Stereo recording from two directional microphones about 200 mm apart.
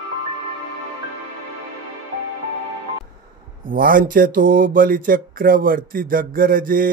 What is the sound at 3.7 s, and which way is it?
Speech, 45° right (ahead or behind).